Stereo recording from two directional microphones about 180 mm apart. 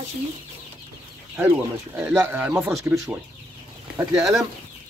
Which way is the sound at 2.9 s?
Centre (ahead or behind).